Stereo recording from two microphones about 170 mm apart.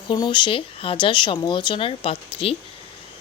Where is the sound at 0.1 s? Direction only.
25° left (ahead or behind).